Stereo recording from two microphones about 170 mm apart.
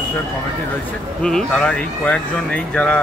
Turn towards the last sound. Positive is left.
turn(degrees=5)  # may be behind; listen again after turning